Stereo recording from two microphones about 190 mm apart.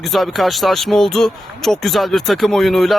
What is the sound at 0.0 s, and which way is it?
Speech, centre (ahead or behind).